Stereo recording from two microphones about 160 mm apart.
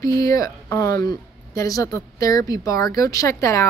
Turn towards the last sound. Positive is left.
turn(degrees=20)  # may be behind; listen again after turning